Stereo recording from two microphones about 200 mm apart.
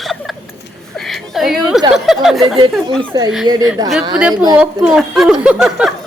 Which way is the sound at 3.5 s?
25° right (ahead or behind).